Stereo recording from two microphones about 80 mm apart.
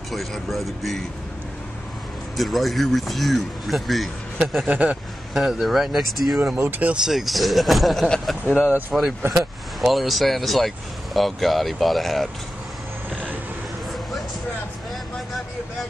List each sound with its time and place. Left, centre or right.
0.1 s speech: centre
2.3 s speech: centre
4.6 s speech: centre
5.3 s speech: centre
6.7 s speech: centre
7.1 s speech: centre
8.5 s speech: centre
9.4 s speech: centre